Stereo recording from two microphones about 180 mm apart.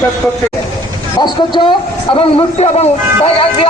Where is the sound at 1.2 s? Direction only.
25° left (ahead or behind).